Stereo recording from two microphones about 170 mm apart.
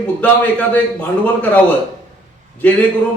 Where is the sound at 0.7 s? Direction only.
10° left (ahead or behind).